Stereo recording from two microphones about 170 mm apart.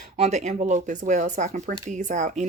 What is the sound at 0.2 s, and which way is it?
Speech, 45° right (ahead or behind).